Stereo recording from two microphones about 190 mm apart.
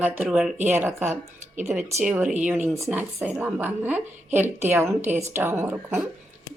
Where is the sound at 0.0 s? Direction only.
10° right (ahead or behind).